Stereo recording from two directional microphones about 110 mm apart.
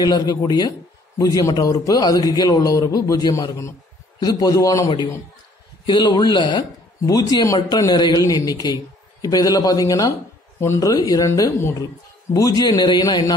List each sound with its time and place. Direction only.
0.0 s a man's voice: 40° left (ahead or behind)